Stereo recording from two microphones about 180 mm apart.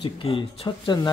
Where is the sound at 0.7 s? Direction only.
20° left (ahead or behind).